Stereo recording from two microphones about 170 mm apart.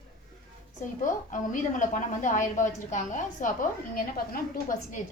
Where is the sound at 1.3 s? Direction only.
50° left (ahead or behind).